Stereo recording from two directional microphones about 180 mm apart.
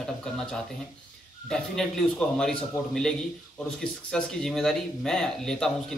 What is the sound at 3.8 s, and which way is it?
Speech, 5° left (ahead or behind).